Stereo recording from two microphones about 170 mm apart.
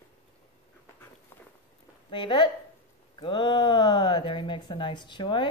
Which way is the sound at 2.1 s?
25° left (ahead or behind).